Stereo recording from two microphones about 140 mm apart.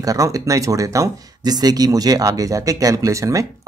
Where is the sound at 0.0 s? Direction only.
25° right (ahead or behind).